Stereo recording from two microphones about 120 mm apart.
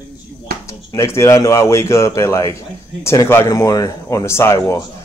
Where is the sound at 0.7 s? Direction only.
25° left (ahead or behind).